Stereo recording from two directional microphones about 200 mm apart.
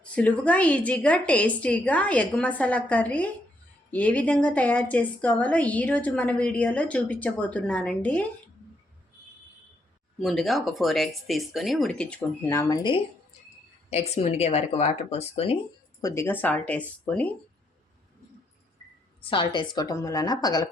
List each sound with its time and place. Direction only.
0.0 s a woman's voice: 5° left (ahead or behind)
10.2 s speech: centre (ahead or behind); by 13.0 s 20° left (ahead or behind)
13.9 s speech: 30° left (ahead or behind)
16.0 s a woman's voice: 15° left (ahead or behind)
19.5 s speech: 20° left (ahead or behind)